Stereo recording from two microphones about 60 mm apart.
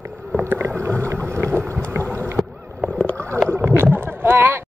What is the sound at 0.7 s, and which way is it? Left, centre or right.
Boat, right.